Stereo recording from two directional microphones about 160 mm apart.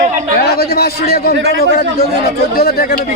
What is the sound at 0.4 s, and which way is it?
A man's voice, 85° left.